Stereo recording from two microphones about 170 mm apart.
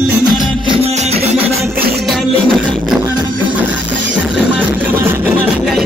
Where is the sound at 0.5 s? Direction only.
30° right (ahead or behind).